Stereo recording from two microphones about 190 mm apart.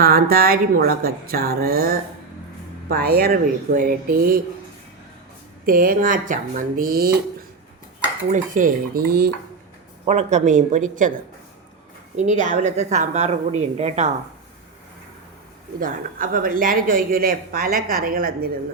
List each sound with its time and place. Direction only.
0.0 s speech: 50° right (ahead or behind)
5.6 s speech: 50° right (ahead or behind)
8.3 s speech: 45° right (ahead or behind)
10.1 s a woman's voice: 35° right (ahead or behind)
12.1 s a woman's voice: 40° right (ahead or behind)
15.8 s speech: 45° right (ahead or behind)